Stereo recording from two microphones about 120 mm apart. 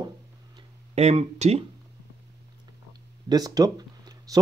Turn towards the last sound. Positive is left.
turn(degrees=-30)  # may be behind; listen again after turning